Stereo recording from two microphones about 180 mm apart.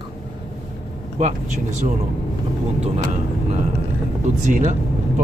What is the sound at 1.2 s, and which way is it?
Speech, 45° right (ahead or behind).